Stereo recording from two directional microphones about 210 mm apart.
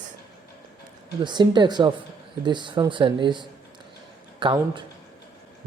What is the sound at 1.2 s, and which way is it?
Speech, 20° right (ahead or behind).